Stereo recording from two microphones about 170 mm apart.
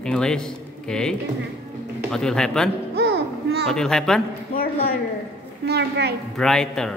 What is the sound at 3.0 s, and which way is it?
Music, 75° right (ahead or behind).